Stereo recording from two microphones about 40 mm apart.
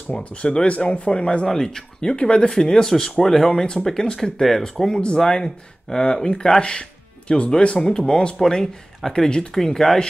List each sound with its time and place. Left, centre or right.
0.1 s speech: left
1.4 s speech: centre
2.5 s speech: centre